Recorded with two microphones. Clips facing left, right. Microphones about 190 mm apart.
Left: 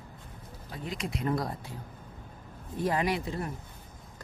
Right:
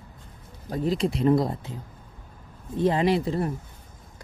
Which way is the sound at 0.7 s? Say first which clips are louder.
Right 11 dB; 35° right (ahead or behind).